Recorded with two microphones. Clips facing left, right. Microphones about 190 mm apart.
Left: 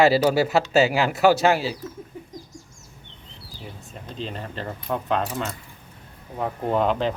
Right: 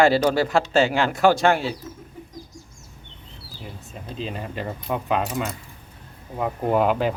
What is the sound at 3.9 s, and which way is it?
Speech, 5° right (ahead or behind).